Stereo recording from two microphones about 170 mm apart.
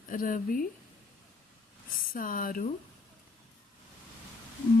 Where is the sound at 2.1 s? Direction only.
55° left (ahead or behind).